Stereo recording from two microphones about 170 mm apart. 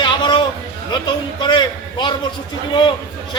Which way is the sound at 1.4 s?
25° left (ahead or behind).